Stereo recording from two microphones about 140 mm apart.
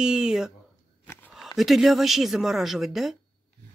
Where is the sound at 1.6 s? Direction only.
Centre (ahead or behind).